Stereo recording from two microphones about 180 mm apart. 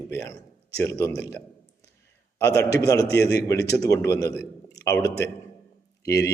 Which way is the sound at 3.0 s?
65° left (ahead or behind).